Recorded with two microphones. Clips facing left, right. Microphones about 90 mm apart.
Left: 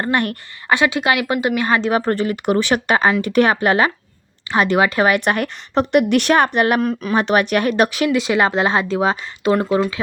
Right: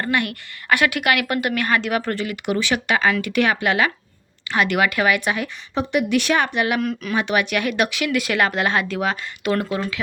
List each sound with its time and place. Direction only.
0.0 s speech: 40° left (ahead or behind)
0.7 s speech: 25° left (ahead or behind)